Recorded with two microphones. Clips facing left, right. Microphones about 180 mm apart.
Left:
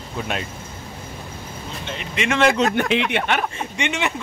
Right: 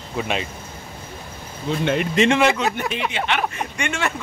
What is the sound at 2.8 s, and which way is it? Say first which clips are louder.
Speech: left 5 dB; 80° left.